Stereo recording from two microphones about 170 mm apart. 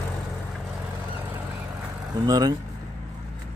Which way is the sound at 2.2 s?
25° right (ahead or behind).